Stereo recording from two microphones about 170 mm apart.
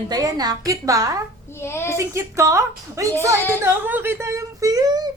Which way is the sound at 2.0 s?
15° right (ahead or behind).